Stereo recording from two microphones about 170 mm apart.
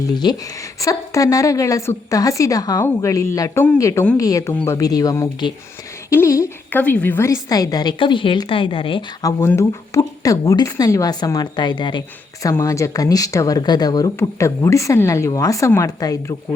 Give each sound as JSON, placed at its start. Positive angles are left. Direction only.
{"t": 0.0, "sound": "a woman's voice", "side_deg": 25}
{"t": 9.4, "sound": "a woman's voice", "side_deg": 15}